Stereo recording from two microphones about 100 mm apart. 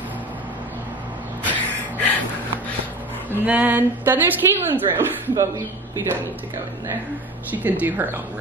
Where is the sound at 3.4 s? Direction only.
15° right (ahead or behind).